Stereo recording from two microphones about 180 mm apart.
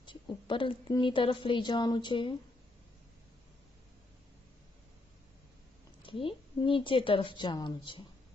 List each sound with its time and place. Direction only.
0.0 s a woman's voice: 25° left (ahead or behind)
6.0 s a woman's voice: 30° left (ahead or behind)